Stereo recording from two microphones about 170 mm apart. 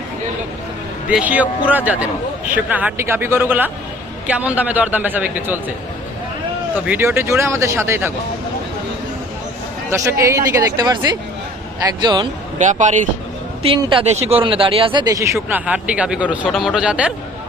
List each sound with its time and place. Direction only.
1.1 s speech: 10° right (ahead or behind)
6.7 s speech: 10° right (ahead or behind)
9.9 s speech: 15° right (ahead or behind)
12.5 s speech: 45° right (ahead or behind)
13.6 s speech: 35° right (ahead or behind); by 17.1 s 5° right (ahead or behind)